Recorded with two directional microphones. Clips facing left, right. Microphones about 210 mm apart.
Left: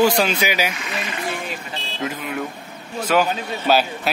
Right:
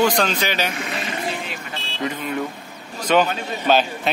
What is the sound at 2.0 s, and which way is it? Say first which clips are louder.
Vehicle: right 2 dB; 5° left (ahead or behind).